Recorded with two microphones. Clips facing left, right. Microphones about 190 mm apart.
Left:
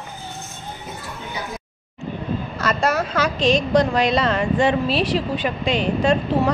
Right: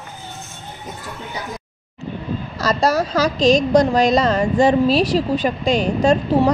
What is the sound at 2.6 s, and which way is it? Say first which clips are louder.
A woman's voice: right 4 dB; 35° right (ahead or behind).